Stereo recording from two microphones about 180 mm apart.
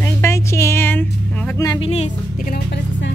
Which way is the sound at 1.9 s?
35° left (ahead or behind).